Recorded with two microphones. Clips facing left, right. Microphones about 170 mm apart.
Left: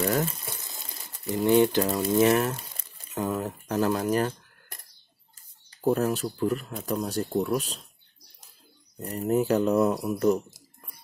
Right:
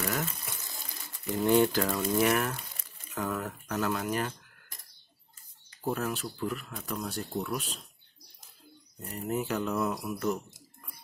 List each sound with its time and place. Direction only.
0.0 s water: 35° left (ahead or behind)
1.5 s speech: 20° left (ahead or behind)
2.0 s a sound: 25° left (ahead or behind)
3.2 s speech: 20° left (ahead or behind)
5.9 s speech: 35° left (ahead or behind)
9.0 s speech: 35° left (ahead or behind)